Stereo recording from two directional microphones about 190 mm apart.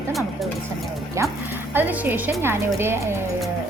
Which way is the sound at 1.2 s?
15° right (ahead or behind).